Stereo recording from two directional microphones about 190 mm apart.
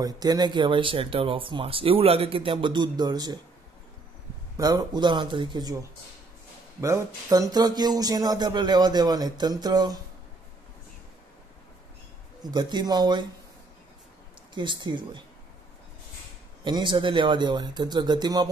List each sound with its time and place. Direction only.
0.0 s speech: 20° right (ahead or behind)
4.6 s speech: 20° right (ahead or behind)
12.4 s speech: 20° right (ahead or behind)
14.5 s speech: 25° right (ahead or behind)
16.6 s speech: 25° right (ahead or behind)